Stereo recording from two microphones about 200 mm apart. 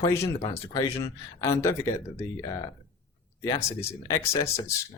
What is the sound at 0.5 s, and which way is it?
Speech, 15° left (ahead or behind).